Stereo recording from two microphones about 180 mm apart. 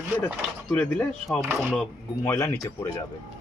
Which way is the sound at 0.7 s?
5° left (ahead or behind).